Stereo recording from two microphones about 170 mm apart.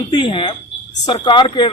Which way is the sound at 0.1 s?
30° left (ahead or behind).